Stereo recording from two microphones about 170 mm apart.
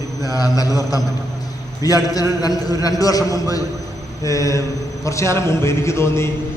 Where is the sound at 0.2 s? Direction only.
20° left (ahead or behind).